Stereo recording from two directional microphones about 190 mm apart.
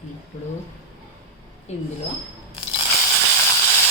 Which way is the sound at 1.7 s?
35° left (ahead or behind).